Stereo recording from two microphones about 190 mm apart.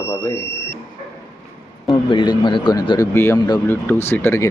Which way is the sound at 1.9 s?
25° left (ahead or behind).